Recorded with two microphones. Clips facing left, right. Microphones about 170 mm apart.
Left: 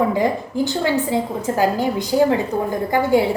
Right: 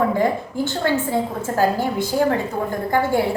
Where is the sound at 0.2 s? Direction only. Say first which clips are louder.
Left 1 dB; 15° left (ahead or behind).